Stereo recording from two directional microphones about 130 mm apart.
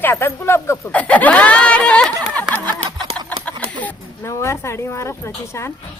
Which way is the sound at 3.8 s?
20° left (ahead or behind).